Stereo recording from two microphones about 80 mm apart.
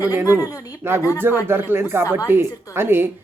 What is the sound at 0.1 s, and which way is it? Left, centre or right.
Speech, right.